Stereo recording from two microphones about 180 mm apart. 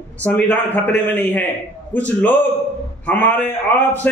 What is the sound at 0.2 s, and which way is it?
A man's voice, 10° left (ahead or behind).